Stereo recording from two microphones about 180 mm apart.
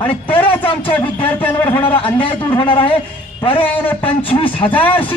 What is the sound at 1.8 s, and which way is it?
Speech, 30° left (ahead or behind).